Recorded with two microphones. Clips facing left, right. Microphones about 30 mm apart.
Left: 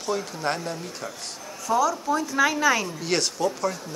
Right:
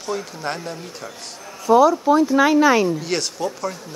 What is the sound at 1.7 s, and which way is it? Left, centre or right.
Speech, right.